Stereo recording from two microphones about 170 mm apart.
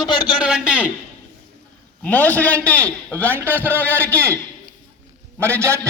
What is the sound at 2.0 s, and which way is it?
A man's voice, 10° left (ahead or behind).